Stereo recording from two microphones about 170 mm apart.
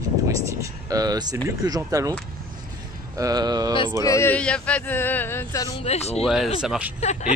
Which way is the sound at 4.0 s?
15° left (ahead or behind).